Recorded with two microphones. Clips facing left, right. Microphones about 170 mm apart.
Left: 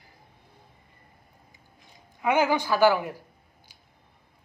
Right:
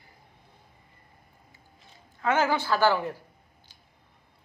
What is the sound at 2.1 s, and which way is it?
A man's voice, 10° left (ahead or behind).